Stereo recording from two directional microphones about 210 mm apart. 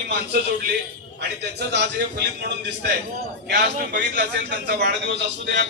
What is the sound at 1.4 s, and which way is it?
Speech, 55° right (ahead or behind).